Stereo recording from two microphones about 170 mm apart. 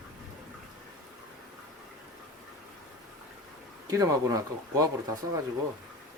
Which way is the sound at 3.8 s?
20° right (ahead or behind).